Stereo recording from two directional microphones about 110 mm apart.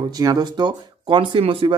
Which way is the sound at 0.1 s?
35° right (ahead or behind).